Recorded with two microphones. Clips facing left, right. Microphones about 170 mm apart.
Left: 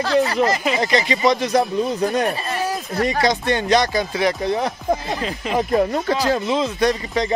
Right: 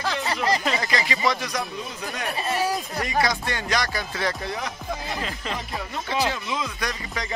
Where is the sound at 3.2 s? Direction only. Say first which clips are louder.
Left 3 dB; 25° left (ahead or behind).